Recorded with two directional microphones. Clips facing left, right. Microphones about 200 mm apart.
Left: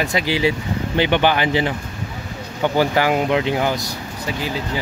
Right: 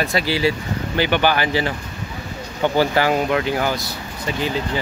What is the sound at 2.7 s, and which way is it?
Speech, 15° left (ahead or behind).